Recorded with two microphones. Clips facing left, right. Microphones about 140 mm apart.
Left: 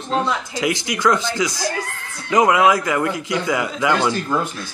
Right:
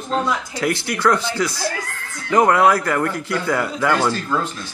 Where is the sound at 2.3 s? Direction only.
10° left (ahead or behind).